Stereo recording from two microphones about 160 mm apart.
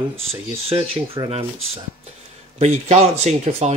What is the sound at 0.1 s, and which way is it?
Speech, 35° right (ahead or behind).